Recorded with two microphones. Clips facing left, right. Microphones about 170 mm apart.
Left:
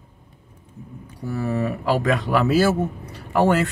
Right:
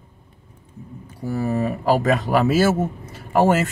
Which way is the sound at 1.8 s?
40° right (ahead or behind).